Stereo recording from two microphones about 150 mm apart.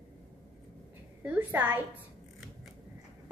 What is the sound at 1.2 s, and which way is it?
Speech, 10° right (ahead or behind).